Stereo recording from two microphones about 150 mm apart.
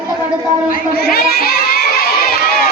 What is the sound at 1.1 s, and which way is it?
Crowd, 80° left.